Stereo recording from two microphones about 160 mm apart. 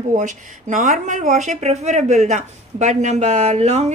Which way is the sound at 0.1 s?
50° right (ahead or behind).